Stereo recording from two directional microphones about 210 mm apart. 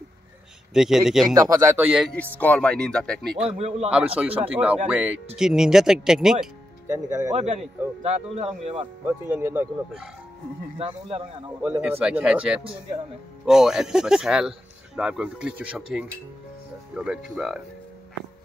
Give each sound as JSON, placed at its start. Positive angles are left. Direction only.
{"t": 0.7, "sound": "speech", "side_deg": 0}
{"t": 1.3, "sound": "speech", "side_deg": -15}
{"t": 2.3, "sound": "speech", "side_deg": 5}
{"t": 3.5, "sound": "speech", "side_deg": -30}
{"t": 4.5, "sound": "speech", "side_deg": -5}
{"t": 7.1, "sound": "speech", "side_deg": -15}
{"t": 7.3, "sound": "a man's voice", "side_deg": -35}
{"t": 9.0, "sound": "speech", "side_deg": -10}
{"t": 10.8, "sound": "speech", "side_deg": -25}
{"t": 11.6, "sound": "speech", "side_deg": -10}